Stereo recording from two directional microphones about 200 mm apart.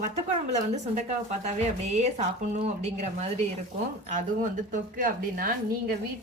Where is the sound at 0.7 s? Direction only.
35° right (ahead or behind).